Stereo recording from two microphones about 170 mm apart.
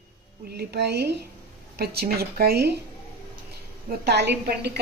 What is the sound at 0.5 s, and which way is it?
Speech, 75° right (ahead or behind).